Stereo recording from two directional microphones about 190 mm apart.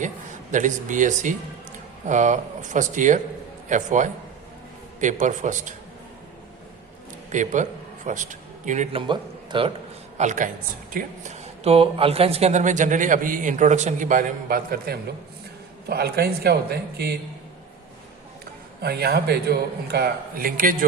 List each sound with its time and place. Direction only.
0.5 s speech: 40° right (ahead or behind)
7.3 s a man's voice: 40° right (ahead or behind)
10.2 s a man's voice: 40° right (ahead or behind); by 17.2 s 60° right (ahead or behind)
18.8 s a man's voice: 55° right (ahead or behind)